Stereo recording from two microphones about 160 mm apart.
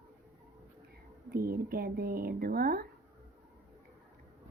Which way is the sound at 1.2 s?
65° right (ahead or behind).